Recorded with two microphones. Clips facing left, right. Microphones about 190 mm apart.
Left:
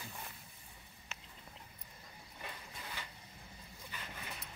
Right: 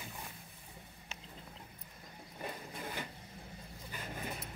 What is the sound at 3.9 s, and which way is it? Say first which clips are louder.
Dog: right 6 dB; 45° right (ahead or behind).